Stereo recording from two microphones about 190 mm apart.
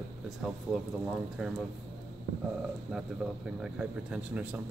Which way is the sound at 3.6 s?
5° right (ahead or behind).